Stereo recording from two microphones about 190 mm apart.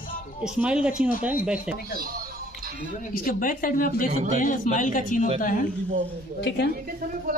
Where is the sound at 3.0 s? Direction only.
45° left (ahead or behind).